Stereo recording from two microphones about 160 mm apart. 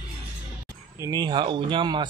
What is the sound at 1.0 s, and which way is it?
Speech, 25° right (ahead or behind).